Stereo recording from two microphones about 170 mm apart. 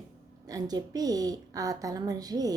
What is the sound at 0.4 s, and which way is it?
A woman's voice, 20° right (ahead or behind).